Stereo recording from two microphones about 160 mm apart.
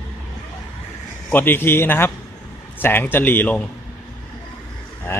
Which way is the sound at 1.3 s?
15° left (ahead or behind).